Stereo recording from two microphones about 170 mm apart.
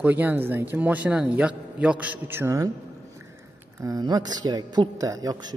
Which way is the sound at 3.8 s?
25° right (ahead or behind).